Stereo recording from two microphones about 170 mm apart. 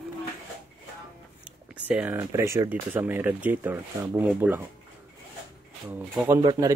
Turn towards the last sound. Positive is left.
turn(degrees=-25)  # may be behind; listen again after turning